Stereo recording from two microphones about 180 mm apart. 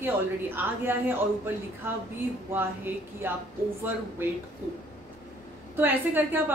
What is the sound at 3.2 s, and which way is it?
Speech, 15° right (ahead or behind).